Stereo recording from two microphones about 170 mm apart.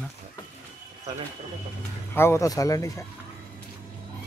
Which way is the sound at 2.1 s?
15° left (ahead or behind).